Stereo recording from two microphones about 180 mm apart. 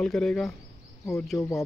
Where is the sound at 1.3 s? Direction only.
20° left (ahead or behind).